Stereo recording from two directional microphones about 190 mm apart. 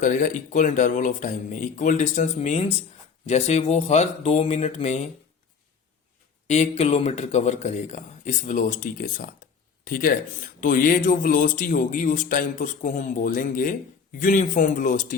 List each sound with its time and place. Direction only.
0.0 s speech: 40° left (ahead or behind)
6.5 s speech: 35° left (ahead or behind)